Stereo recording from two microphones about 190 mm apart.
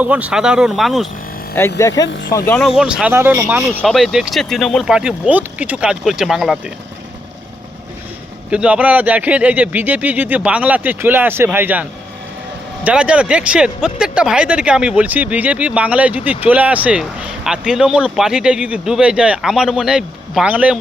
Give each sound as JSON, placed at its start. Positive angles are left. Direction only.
{"t": 0.0, "sound": "speech", "side_deg": -10}
{"t": 1.6, "sound": "speech", "side_deg": 10}
{"t": 2.0, "sound": "speech", "side_deg": 70}
{"t": 2.5, "sound": "speech", "side_deg": 0}
{"t": 8.4, "sound": "speech", "side_deg": -5}